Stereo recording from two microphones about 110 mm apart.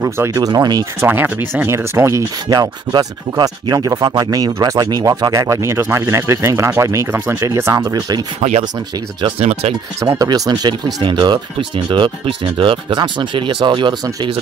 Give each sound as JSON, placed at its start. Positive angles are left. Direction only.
{"t": 0.0, "sound": "speech", "side_deg": -30}
{"t": 1.0, "sound": "speech", "side_deg": -20}
{"t": 7.8, "sound": "speech", "side_deg": -40}
{"t": 8.4, "sound": "speech", "side_deg": -90}
{"t": 9.9, "sound": "speech", "side_deg": -35}